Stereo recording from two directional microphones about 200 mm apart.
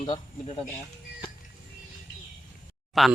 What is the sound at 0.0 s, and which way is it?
Speech, 30° left (ahead or behind).